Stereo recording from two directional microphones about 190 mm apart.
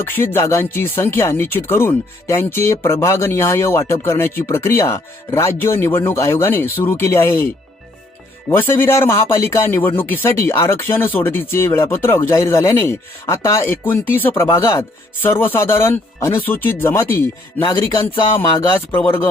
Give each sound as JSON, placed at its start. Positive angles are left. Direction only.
{"t": 0.0, "sound": "speech", "side_deg": 10}
{"t": 8.4, "sound": "speech", "side_deg": 10}
{"t": 17.6, "sound": "music", "side_deg": 25}
{"t": 18.0, "sound": "speech", "side_deg": 10}
{"t": 18.5, "sound": "music", "side_deg": 25}
{"t": 18.9, "sound": "speech", "side_deg": 10}